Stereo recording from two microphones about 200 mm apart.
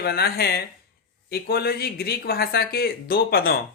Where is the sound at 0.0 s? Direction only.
50° left (ahead or behind).